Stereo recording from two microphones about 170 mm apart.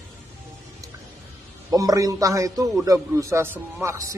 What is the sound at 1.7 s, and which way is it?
A man's voice, 20° right (ahead or behind).